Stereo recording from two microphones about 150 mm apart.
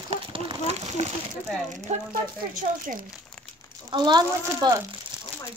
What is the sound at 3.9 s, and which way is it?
Speech, 30° right (ahead or behind).